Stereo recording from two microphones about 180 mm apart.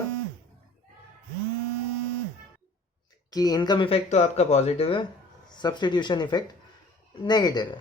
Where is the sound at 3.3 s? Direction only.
20° left (ahead or behind).